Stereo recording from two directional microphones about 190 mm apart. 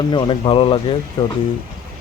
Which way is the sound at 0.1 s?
25° left (ahead or behind).